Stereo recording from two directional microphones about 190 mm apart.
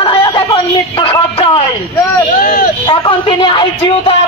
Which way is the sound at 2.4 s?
45° left (ahead or behind).